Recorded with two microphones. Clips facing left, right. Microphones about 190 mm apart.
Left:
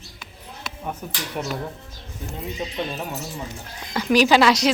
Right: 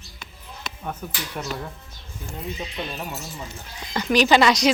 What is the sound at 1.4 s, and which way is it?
Speech, 10° left (ahead or behind).